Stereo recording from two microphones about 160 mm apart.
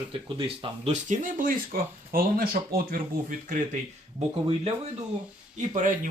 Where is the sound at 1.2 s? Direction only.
60° right (ahead or behind).